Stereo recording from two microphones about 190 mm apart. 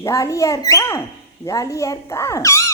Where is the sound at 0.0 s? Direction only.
15° left (ahead or behind).